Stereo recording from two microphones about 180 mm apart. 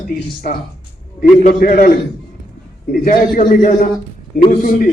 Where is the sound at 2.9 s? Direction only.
50° left (ahead or behind).